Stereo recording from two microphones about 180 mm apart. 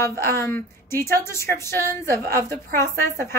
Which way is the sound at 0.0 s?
15° left (ahead or behind).